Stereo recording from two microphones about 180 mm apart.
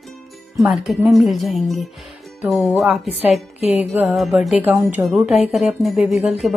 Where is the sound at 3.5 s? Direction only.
35° left (ahead or behind).